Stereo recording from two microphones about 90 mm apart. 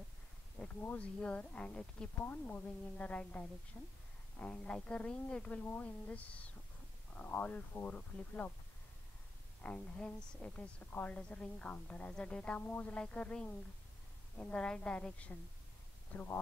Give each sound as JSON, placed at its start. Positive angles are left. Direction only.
{"t": 0.6, "sound": "a woman's voice", "side_deg": 15}
{"t": 9.6, "sound": "a woman's voice", "side_deg": 15}